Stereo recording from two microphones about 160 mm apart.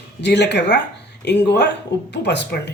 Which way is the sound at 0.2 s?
90° left.